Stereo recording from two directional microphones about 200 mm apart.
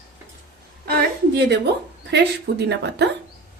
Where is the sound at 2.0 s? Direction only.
60° right (ahead or behind).